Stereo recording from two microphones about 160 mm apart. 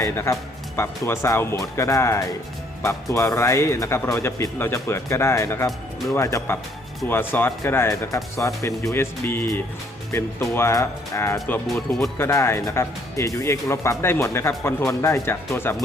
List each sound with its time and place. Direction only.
0.0 s a man's voice: 20° left (ahead or behind)
11.7 s speech: centre (ahead or behind)
12.1 s a man's voice: 15° left (ahead or behind)